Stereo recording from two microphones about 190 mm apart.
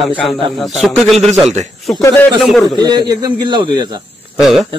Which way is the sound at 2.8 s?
20° right (ahead or behind).